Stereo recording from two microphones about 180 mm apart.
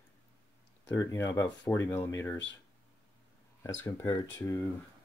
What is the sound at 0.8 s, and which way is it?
Speech, 15° left (ahead or behind).